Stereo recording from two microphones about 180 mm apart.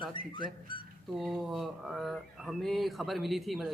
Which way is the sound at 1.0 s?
Centre (ahead or behind).